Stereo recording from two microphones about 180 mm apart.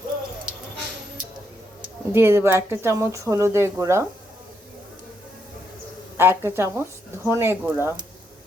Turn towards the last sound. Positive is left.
turn(degrees=-10)  # may be behind; listen again after turning